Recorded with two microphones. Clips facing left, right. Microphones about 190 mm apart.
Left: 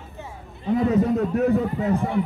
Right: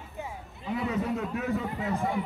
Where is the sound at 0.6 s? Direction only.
40° left (ahead or behind).